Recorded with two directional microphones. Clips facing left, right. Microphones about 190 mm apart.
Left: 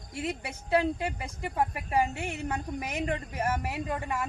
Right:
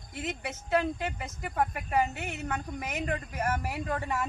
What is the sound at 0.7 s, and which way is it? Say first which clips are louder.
A woman's voice: left 2 dB; 30° left (ahead or behind).